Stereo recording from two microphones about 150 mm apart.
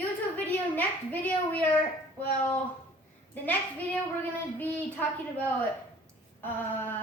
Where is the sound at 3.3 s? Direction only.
10° left (ahead or behind).